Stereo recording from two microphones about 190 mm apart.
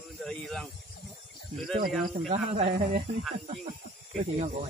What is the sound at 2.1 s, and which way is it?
Speech, 35° right (ahead or behind).